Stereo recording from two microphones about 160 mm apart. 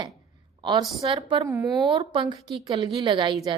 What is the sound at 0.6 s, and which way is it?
A woman's voice, 30° right (ahead or behind).